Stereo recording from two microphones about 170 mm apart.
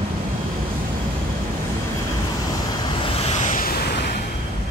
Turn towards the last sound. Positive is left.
turn(degrees=55)  # may be behind; listen again after turning